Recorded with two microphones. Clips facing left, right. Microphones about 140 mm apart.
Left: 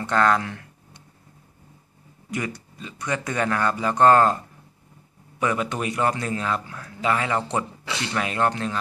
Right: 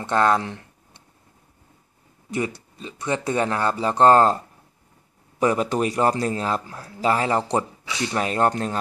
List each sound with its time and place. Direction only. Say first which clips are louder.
0.0 s a sound: right 1 dB; 25° right (ahead or behind)
2.3 s speech: right 3 dB; 25° right (ahead or behind)
5.4 s a man's voice: right 4 dB; 35° right (ahead or behind)